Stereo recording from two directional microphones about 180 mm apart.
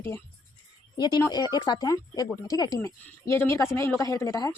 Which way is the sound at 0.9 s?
20° left (ahead or behind).